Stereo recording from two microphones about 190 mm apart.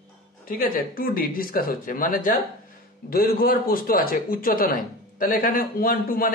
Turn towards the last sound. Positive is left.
turn(degrees=50)  # may be behind; listen again after turning